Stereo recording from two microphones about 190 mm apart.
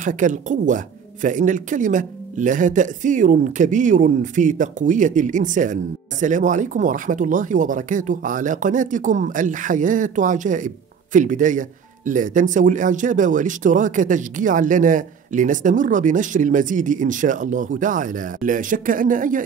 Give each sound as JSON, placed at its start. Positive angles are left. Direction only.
{"t": 0.0, "sound": "speech", "side_deg": -40}